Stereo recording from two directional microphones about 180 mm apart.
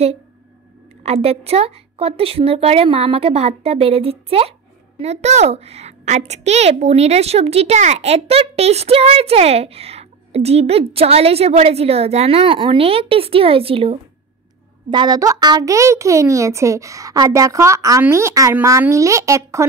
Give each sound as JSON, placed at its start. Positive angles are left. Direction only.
{"t": 1.0, "sound": "a woman's voice", "side_deg": -35}